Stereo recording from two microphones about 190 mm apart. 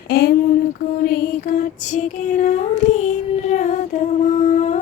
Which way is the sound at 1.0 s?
50° left (ahead or behind).